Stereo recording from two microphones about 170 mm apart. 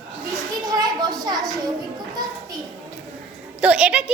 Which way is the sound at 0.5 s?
20° right (ahead or behind).